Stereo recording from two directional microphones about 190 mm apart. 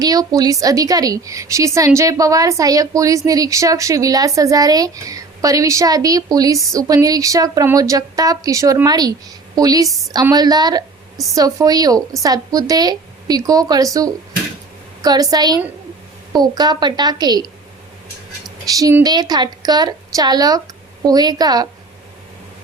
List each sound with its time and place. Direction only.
0.0 s a woman's voice: 20° right (ahead or behind)
18.4 s a woman's voice: 20° right (ahead or behind)